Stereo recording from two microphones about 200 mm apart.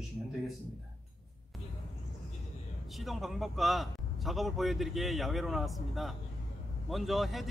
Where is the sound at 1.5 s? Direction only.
Centre (ahead or behind).